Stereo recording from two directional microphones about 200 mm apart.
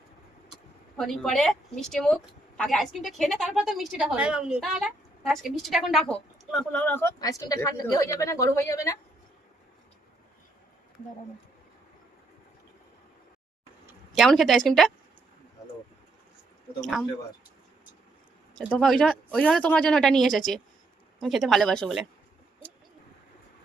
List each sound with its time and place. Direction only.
0.5 s a woman's voice: centre (ahead or behind)
14.2 s speech: centre (ahead or behind)
16.8 s speech: centre (ahead or behind)
18.5 s speech: 5° left (ahead or behind)